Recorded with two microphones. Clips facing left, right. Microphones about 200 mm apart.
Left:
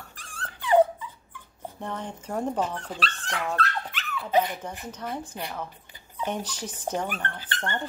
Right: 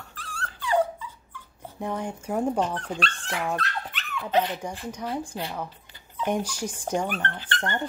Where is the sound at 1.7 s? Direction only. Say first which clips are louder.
Right 5 dB; 10° right (ahead or behind).